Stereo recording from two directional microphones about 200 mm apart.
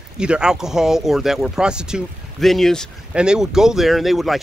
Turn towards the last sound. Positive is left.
turn(degrees=0)  # may be behind; listen again after turning